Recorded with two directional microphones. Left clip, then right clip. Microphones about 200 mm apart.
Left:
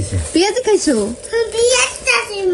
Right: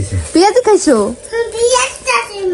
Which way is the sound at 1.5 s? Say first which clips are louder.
Right 2 dB; centre (ahead or behind).